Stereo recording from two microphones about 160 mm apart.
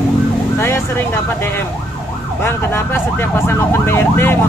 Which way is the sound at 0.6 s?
15° left (ahead or behind).